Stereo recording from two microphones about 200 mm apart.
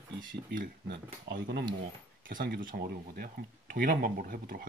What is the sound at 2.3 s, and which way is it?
Speech, 45° right (ahead or behind).